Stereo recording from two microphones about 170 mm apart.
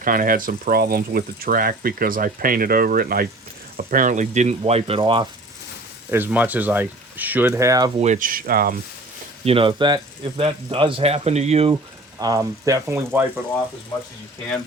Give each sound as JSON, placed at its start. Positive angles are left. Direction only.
{"t": 0.0, "sound": "speech", "side_deg": -55}
{"t": 6.1, "sound": "speech", "side_deg": -10}
{"t": 7.9, "sound": "speech", "side_deg": -45}
{"t": 9.4, "sound": "speech", "side_deg": -35}
{"t": 12.2, "sound": "speech", "side_deg": -20}